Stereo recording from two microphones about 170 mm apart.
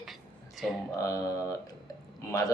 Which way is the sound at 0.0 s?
Centre (ahead or behind).